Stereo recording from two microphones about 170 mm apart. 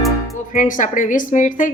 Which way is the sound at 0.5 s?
50° left (ahead or behind).